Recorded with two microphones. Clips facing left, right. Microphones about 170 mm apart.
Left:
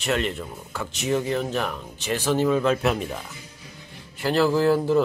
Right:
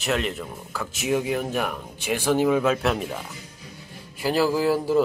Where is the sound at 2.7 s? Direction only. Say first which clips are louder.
Left 1 dB; centre (ahead or behind).